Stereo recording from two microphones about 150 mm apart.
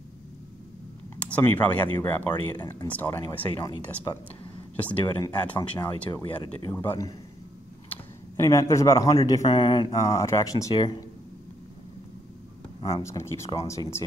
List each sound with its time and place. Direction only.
1.1 s speech: 10° left (ahead or behind)
2.6 s speech: 25° left (ahead or behind)
2.9 s speech: 10° left (ahead or behind)
3.2 s speech: 25° left (ahead or behind)
4.7 s speech: 10° left (ahead or behind)
5.6 s speech: 30° left (ahead or behind)
6.7 s speech: 15° left (ahead or behind)
12.9 s speech: 20° left (ahead or behind)